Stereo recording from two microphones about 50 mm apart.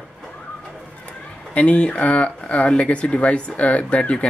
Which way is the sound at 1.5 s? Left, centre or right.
Left.